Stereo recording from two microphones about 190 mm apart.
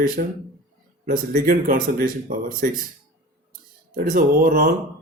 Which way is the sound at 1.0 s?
50° right (ahead or behind).